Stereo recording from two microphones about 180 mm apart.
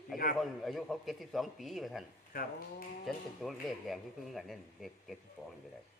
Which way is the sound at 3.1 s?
Centre (ahead or behind).